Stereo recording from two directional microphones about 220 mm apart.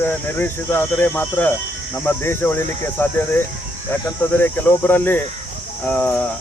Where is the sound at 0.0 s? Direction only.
10° left (ahead or behind).